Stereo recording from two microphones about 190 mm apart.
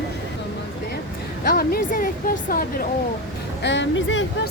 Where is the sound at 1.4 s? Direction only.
50° left (ahead or behind).